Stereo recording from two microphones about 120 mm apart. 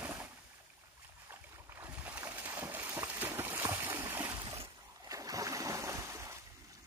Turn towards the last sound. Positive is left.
turn(degrees=-25)  # may be behind; listen again after turning